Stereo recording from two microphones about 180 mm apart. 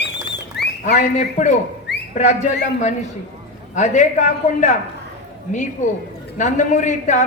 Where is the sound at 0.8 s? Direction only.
40° left (ahead or behind).